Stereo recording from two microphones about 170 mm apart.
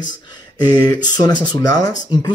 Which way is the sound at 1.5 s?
20° left (ahead or behind).